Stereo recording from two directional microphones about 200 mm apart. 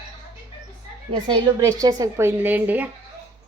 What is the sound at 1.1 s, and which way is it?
A woman's voice, 20° right (ahead or behind).